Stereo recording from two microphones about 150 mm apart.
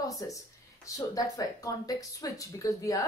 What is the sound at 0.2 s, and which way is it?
Speech, 20° left (ahead or behind).